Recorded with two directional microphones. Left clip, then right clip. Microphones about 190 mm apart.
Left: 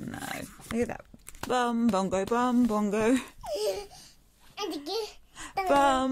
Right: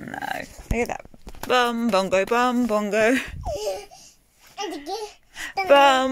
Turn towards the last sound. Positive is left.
turn(degrees=-5)  # may be behind; listen again after turning